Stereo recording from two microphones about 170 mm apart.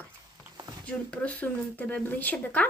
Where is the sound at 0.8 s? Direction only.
10° left (ahead or behind).